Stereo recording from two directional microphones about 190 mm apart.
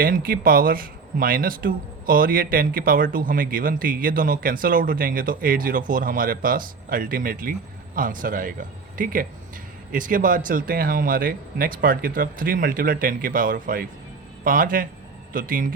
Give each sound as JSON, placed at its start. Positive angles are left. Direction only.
{"t": 0.0, "sound": "speech", "side_deg": -50}